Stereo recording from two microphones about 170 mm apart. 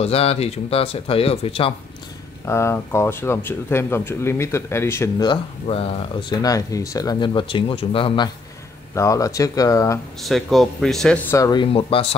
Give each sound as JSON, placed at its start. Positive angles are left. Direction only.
{"t": 0.0, "sound": "speech", "side_deg": 35}
{"t": 2.4, "sound": "speech", "side_deg": 15}
{"t": 5.3, "sound": "speech", "side_deg": 35}
{"t": 8.9, "sound": "speech", "side_deg": 20}
{"t": 10.2, "sound": "speech", "side_deg": 0}
{"t": 11.2, "sound": "speech", "side_deg": 20}
{"t": 11.6, "sound": "speech", "side_deg": 35}